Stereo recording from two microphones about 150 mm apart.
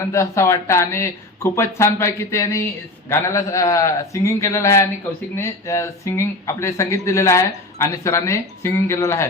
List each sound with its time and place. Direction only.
0.0 s speech: 20° left (ahead or behind)